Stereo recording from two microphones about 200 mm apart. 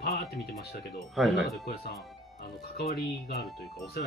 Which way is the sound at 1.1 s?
Centre (ahead or behind).